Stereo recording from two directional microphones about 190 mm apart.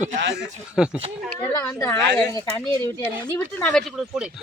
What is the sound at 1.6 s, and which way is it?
Speech, 15° left (ahead or behind).